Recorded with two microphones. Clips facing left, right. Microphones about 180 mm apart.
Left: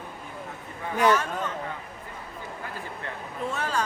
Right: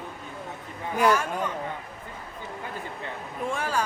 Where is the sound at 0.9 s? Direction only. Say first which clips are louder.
Even; 10° right (ahead or behind).